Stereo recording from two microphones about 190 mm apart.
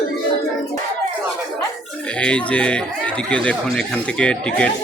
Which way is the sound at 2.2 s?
5° left (ahead or behind).